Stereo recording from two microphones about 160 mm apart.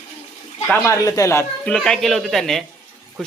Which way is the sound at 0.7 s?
20° left (ahead or behind).